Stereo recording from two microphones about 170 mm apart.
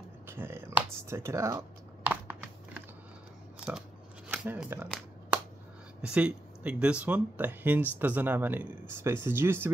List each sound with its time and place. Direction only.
0.3 s speech: 15° right (ahead or behind)
2.0 s computer keyboard: 10° right (ahead or behind)
4.3 s speech: 10° right (ahead or behind)
6.0 s speech: 5° right (ahead or behind)